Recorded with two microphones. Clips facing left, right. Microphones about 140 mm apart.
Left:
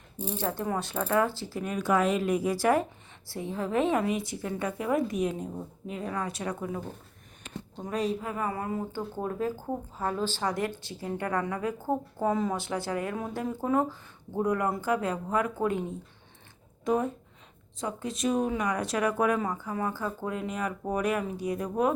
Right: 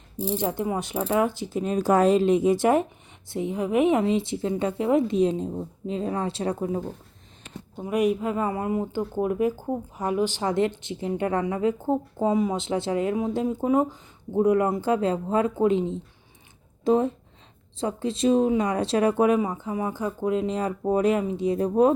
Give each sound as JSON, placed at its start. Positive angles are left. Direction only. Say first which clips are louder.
{"t": 0.3, "sound": "mechanisms", "louder": "right 3 dB", "side_deg": -15}
{"t": 1.7, "sound": "speech", "louder": "right 6 dB", "side_deg": -35}
{"t": 7.8, "sound": "speech", "louder": "right 7 dB", "side_deg": -15}